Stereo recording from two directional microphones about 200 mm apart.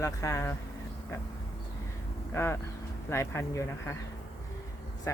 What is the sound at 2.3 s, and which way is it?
Speech, 15° left (ahead or behind).